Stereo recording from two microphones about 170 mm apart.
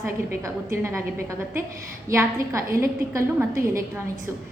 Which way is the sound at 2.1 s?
15° right (ahead or behind).